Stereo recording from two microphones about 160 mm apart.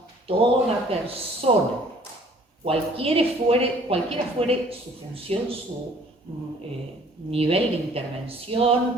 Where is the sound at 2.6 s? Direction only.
35° right (ahead or behind).